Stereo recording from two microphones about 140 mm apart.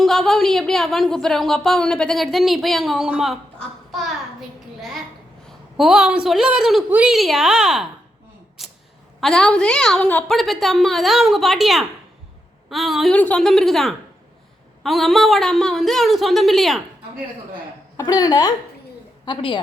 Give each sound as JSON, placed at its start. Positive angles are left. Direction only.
{"t": 0.0, "sound": "a woman's voice", "side_deg": 5}
{"t": 8.6, "sound": "a sound", "side_deg": 0}
{"t": 9.2, "sound": "a woman's voice", "side_deg": 5}
{"t": 10.3, "sound": "a woman's voice", "side_deg": 0}
{"t": 17.9, "sound": "a woman's voice", "side_deg": 25}